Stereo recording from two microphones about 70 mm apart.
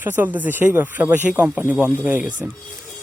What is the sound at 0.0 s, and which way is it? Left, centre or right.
Speech, right.